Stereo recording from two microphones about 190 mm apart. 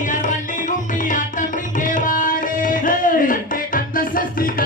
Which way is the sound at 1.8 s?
45° left (ahead or behind).